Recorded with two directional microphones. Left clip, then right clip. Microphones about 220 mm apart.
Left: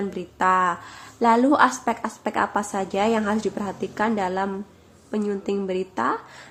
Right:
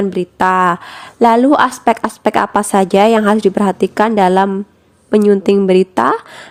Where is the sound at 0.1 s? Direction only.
45° right (ahead or behind).